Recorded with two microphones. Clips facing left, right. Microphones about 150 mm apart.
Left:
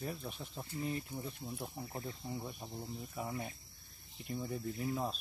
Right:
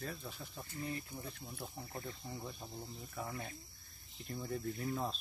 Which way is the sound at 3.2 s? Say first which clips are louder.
Left 2 dB; 10° left (ahead or behind).